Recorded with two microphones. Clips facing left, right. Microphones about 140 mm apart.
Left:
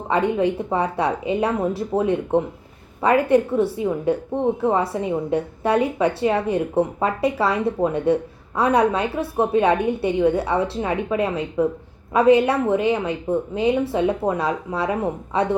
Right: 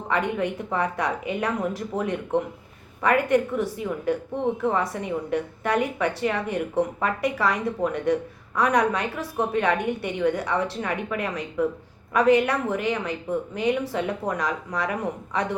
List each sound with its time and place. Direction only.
0.1 s a woman's voice: 30° left (ahead or behind)